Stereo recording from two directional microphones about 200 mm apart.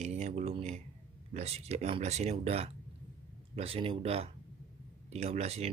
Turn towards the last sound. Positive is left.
turn(degrees=-30)  # may be behind; listen again after turning